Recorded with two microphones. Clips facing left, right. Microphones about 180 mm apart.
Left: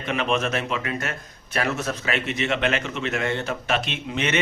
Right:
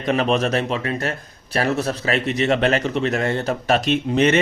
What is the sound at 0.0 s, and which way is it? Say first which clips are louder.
A man's voice: right 5 dB; 35° right (ahead or behind).